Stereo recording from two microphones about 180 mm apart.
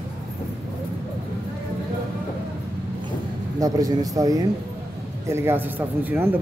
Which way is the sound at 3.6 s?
20° right (ahead or behind).